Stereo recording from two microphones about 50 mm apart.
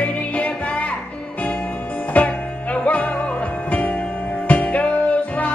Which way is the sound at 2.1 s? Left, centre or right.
Left.